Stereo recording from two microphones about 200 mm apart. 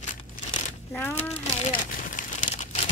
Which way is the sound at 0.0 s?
40° left (ahead or behind).